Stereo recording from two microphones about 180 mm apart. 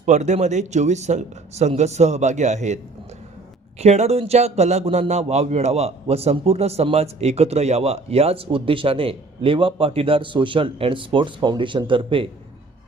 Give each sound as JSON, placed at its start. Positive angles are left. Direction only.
{"t": 0.0, "sound": "a man's voice", "side_deg": -40}